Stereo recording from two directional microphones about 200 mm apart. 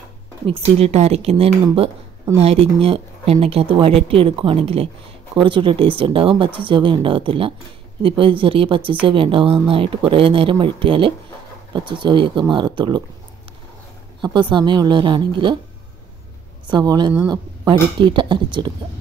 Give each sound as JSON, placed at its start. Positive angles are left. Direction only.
{"t": 0.5, "sound": "speech", "side_deg": -30}
{"t": 14.2, "sound": "speech", "side_deg": -20}
{"t": 16.7, "sound": "speech", "side_deg": -20}